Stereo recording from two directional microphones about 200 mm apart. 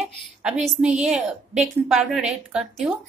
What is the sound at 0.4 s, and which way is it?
A woman's voice, 5° right (ahead or behind).